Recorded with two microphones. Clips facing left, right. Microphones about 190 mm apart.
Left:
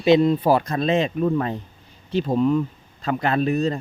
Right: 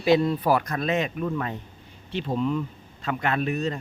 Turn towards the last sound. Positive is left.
turn(degrees=35)  # may be behind; listen again after turning